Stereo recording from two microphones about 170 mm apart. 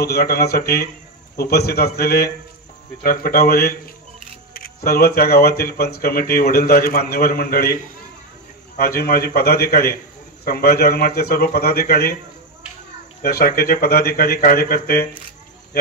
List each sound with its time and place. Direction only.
0.0 s a man's voice: 65° left (ahead or behind)
13.2 s speech: 65° left (ahead or behind)